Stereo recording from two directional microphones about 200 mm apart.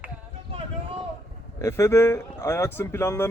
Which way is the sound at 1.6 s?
15° left (ahead or behind).